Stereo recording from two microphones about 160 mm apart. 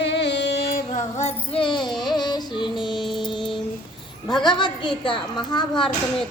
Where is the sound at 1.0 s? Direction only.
45° left (ahead or behind).